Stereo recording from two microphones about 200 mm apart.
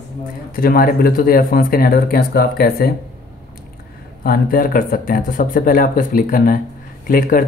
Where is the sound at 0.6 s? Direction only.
45° left (ahead or behind).